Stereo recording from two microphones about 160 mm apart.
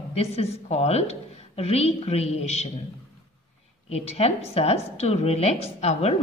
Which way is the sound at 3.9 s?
40° left (ahead or behind).